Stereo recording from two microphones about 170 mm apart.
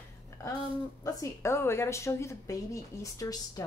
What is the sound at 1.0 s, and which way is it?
A woman's voice, 15° left (ahead or behind).